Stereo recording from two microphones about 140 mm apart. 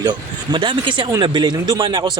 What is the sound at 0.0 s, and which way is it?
Speech, 35° right (ahead or behind).